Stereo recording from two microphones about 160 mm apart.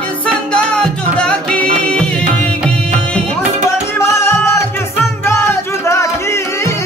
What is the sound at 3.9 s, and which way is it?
Music, 15° left (ahead or behind).